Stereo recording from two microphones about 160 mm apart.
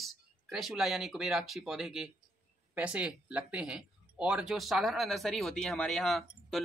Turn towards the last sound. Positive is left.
turn(degrees=0)  # may be behind; listen again after turning